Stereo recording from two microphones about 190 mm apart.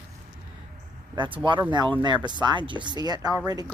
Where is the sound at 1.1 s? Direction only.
25° right (ahead or behind).